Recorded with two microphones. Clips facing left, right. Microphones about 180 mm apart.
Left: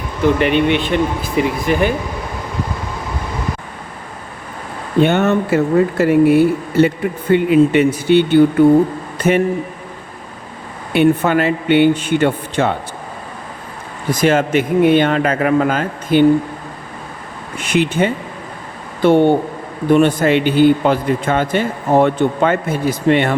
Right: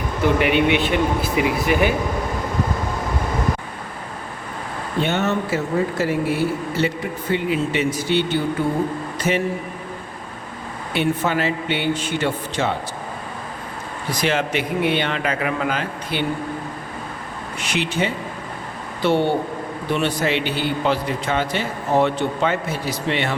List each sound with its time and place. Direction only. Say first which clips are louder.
0.3 s speech: left 3 dB; 10° right (ahead or behind)
4.9 s speech: left 8 dB; 55° left (ahead or behind)
9.1 s a sound: left 7 dB; 55° left (ahead or behind)
10.9 s speech: left 8 dB; 55° left (ahead or behind)
14.1 s a man's voice: left 8 dB; 50° left (ahead or behind)
17.6 s a man's voice: left 7 dB; 50° left (ahead or behind)